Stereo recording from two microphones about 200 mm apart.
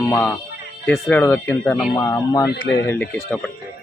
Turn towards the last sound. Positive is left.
turn(degrees=10)  # may be behind; listen again after turning